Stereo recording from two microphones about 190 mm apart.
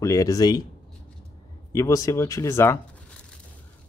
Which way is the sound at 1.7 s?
15° left (ahead or behind).